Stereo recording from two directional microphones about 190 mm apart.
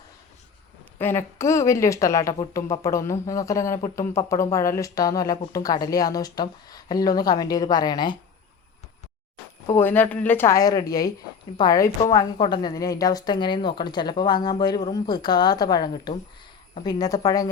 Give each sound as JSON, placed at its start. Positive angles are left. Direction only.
{"t": 0.9, "sound": "a woman's voice", "side_deg": 10}
{"t": 9.6, "sound": "a woman's voice", "side_deg": 10}